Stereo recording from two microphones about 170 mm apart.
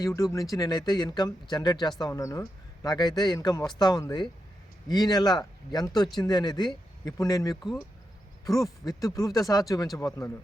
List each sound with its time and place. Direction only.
0.0 s speech: 20° left (ahead or behind)
7.5 s speech: centre (ahead or behind)
9.0 s speech: 20° left (ahead or behind)